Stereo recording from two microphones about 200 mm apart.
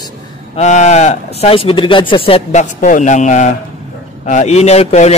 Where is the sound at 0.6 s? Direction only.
35° left (ahead or behind).